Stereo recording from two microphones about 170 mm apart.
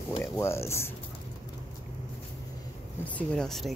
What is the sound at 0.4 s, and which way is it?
Speech, 15° left (ahead or behind).